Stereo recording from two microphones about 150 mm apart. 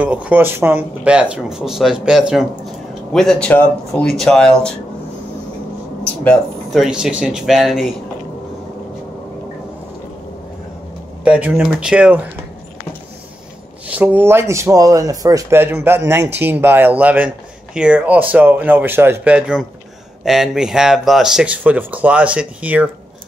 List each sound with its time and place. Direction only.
0.0 s speech: 10° right (ahead or behind)
6.2 s speech: 5° left (ahead or behind)
11.2 s speech: 10° right (ahead or behind)
13.9 s speech: 10° right (ahead or behind)